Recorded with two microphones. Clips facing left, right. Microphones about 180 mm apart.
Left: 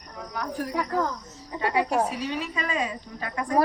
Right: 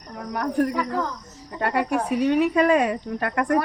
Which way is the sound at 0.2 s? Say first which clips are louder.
Right 8 dB; 60° right (ahead or behind).